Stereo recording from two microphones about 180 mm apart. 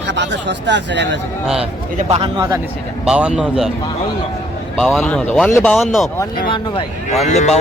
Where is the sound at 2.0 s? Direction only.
35° right (ahead or behind).